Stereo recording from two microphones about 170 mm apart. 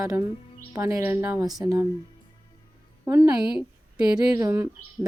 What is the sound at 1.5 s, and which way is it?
Speech, centre (ahead or behind).